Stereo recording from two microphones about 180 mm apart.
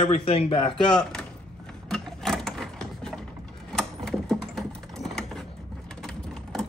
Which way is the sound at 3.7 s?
5° left (ahead or behind).